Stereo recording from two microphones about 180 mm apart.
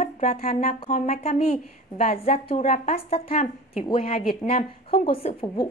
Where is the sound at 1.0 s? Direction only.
35° left (ahead or behind).